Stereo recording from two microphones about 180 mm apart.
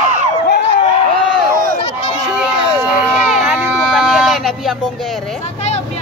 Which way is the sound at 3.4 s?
Centre (ahead or behind).